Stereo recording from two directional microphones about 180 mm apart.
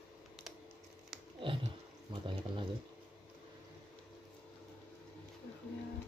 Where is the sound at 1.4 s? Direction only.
30° right (ahead or behind).